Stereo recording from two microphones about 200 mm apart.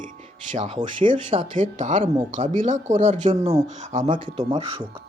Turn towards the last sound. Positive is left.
turn(degrees=-25)  # may be behind; listen again after turning